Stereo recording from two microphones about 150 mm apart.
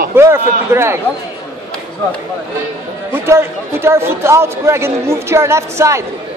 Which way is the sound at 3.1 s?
15° right (ahead or behind).